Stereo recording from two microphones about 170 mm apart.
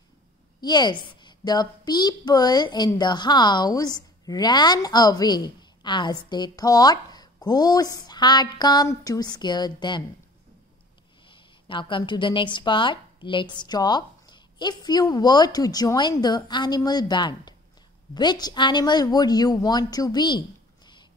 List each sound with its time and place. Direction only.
0.6 s a woman's voice: 25° left (ahead or behind)
11.2 s a woman's voice: 30° left (ahead or behind)